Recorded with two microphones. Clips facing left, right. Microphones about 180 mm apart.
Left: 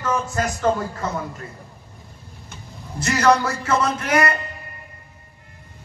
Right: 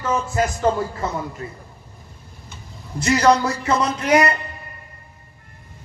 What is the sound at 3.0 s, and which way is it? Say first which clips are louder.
Speech: right 2 dB; 15° right (ahead or behind).